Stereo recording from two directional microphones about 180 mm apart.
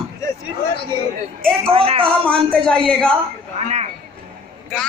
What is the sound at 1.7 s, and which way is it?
Speech, 30° right (ahead or behind).